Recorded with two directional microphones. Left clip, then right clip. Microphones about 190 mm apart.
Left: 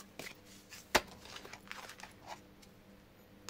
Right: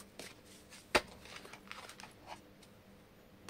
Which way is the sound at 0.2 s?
Centre (ahead or behind).